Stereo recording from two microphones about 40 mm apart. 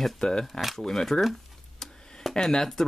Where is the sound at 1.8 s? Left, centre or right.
Centre.